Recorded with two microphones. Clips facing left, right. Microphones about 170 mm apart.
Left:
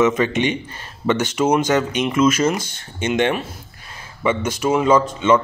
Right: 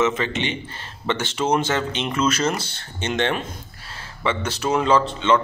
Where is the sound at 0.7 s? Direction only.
15° left (ahead or behind).